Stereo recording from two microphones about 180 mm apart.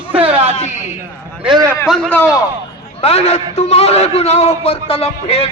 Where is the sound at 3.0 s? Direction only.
35° left (ahead or behind).